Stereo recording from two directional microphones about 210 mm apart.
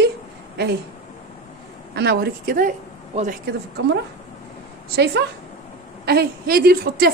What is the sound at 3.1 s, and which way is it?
Speech, 30° right (ahead or behind).